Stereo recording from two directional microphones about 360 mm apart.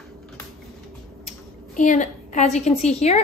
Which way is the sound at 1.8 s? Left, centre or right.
Left.